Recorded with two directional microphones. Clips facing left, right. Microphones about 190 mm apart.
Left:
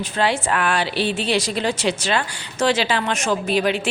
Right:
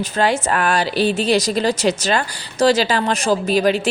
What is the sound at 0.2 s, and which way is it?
A woman's voice, 40° right (ahead or behind).